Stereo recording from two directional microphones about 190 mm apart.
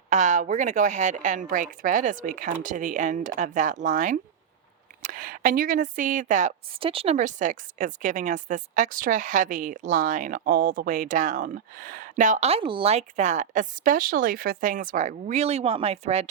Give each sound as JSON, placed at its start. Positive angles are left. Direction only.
{"t": 0.1, "sound": "a woman's voice", "side_deg": -40}
{"t": 6.7, "sound": "a woman's voice", "side_deg": -30}